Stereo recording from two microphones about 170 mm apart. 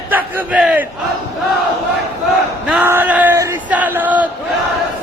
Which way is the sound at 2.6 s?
10° right (ahead or behind).